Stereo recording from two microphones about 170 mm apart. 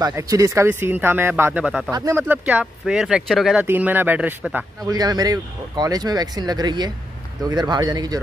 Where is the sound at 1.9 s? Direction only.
20° right (ahead or behind).